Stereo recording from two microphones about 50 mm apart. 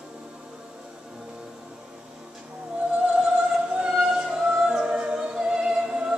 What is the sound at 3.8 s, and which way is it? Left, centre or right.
Music, centre.